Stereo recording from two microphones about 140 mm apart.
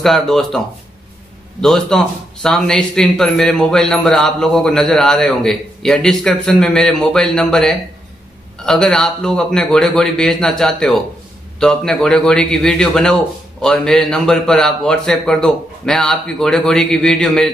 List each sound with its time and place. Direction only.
0.0 s a man's voice: centre (ahead or behind)
1.6 s a man's voice: 5° left (ahead or behind)